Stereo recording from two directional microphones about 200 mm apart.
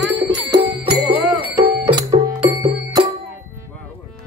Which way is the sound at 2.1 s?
30° right (ahead or behind).